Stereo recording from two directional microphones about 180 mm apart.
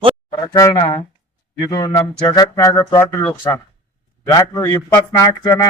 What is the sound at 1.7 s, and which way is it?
A man's voice, 25° left (ahead or behind).